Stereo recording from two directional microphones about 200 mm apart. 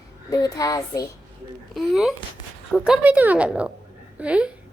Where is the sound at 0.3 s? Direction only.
20° left (ahead or behind).